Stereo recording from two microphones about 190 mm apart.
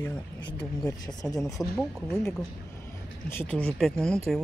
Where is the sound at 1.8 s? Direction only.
5° left (ahead or behind).